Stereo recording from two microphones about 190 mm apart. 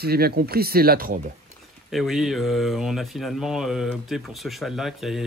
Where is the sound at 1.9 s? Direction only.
Centre (ahead or behind).